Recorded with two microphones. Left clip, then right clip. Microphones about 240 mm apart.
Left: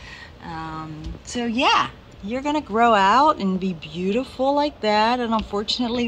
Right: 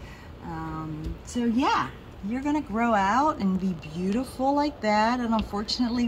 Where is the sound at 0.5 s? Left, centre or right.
Left.